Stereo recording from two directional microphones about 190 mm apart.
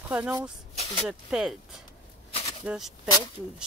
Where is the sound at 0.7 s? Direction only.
30° left (ahead or behind).